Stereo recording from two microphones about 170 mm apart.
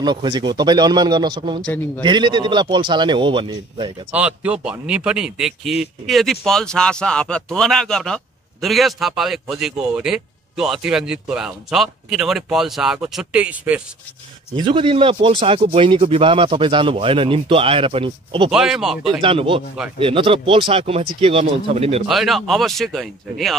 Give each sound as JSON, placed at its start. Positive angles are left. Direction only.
{"t": 0.0, "sound": "speech", "side_deg": -25}
{"t": 4.1, "sound": "speech", "side_deg": -10}
{"t": 14.5, "sound": "speech", "side_deg": -30}
{"t": 18.5, "sound": "speech", "side_deg": -5}
{"t": 19.2, "sound": "speech", "side_deg": -30}
{"t": 22.0, "sound": "speech", "side_deg": 0}